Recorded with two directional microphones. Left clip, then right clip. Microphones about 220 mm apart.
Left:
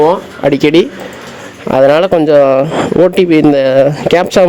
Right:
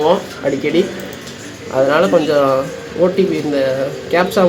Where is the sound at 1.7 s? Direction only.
45° left (ahead or behind).